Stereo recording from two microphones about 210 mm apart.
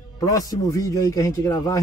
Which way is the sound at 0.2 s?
15° left (ahead or behind).